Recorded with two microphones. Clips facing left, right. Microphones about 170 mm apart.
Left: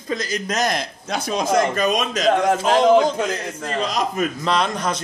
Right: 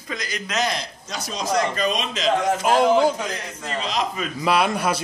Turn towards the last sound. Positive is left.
turn(degrees=-10)  # may be behind; listen again after turning